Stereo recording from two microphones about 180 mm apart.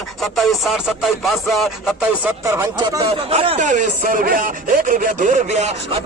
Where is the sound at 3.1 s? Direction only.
35° right (ahead or behind).